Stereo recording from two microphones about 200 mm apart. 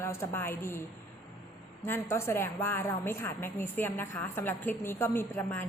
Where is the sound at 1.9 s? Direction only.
15° left (ahead or behind).